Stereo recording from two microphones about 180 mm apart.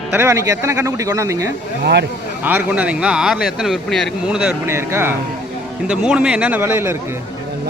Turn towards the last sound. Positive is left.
turn(degrees=-15)  # may be behind; listen again after turning